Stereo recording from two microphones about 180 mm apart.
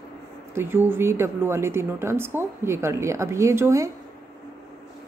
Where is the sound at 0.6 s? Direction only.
10° right (ahead or behind).